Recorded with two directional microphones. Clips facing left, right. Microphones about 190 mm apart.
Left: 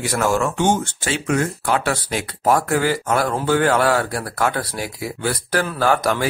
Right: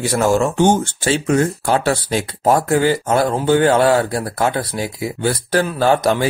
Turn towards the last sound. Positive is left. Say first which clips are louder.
# right 4 dB
turn(degrees=-25)  # may be behind; listen again after turning